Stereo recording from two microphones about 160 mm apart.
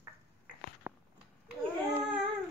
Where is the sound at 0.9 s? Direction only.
15° right (ahead or behind).